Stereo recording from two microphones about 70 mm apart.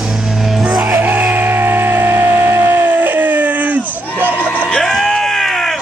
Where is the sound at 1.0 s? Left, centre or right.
Right.